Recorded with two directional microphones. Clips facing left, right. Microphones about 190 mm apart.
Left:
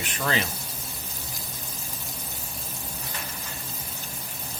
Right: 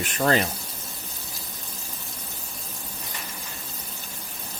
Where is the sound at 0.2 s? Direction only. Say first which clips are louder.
Right 6 dB; 45° right (ahead or behind).